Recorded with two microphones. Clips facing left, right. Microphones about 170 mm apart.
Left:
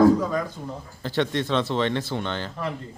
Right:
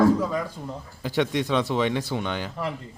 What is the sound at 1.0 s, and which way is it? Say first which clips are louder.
Speech: even; 15° right (ahead or behind).